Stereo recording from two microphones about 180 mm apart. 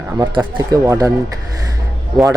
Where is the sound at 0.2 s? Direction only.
20° right (ahead or behind).